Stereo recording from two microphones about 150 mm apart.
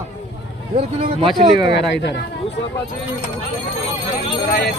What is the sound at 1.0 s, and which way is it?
Speech, 35° right (ahead or behind).